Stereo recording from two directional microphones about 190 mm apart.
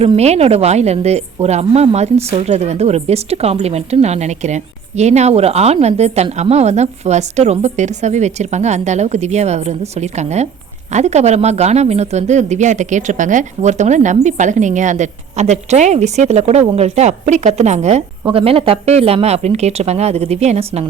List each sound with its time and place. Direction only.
0.0 s a woman's voice: 35° right (ahead or behind)